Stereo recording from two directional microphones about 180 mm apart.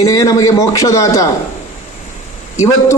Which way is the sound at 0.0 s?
20° left (ahead or behind).